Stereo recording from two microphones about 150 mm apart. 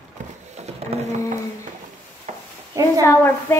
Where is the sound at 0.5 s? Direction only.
45° right (ahead or behind).